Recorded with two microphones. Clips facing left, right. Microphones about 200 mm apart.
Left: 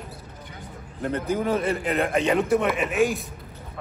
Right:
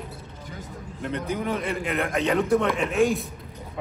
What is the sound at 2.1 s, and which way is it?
Speech, 15° left (ahead or behind).